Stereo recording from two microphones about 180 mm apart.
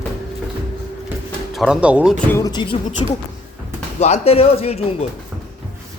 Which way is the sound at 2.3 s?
20° left (ahead or behind).